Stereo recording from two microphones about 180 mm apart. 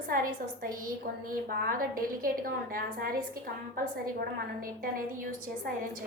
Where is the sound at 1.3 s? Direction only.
55° right (ahead or behind).